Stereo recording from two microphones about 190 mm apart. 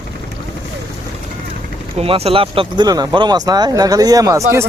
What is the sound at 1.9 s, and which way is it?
Speech, 30° right (ahead or behind).